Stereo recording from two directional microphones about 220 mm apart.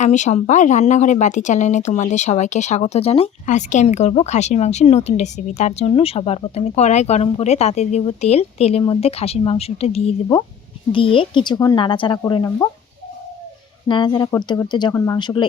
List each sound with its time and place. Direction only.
0.0 s speech: 35° left (ahead or behind); by 12.6 s 15° left (ahead or behind)
13.8 s speech: 20° left (ahead or behind)